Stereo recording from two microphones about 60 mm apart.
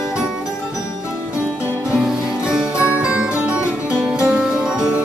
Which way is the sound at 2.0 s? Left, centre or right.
Centre.